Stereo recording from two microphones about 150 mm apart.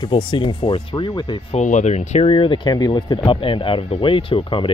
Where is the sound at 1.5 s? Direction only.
50° left (ahead or behind).